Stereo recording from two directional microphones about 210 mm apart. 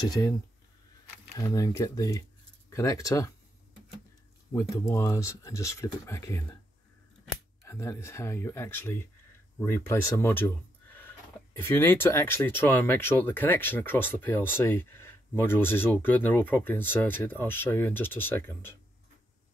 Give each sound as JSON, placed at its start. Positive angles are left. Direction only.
{"t": 0.1, "sound": "speech", "side_deg": 15}
{"t": 4.6, "sound": "speech", "side_deg": 15}
{"t": 7.6, "sound": "speech", "side_deg": 15}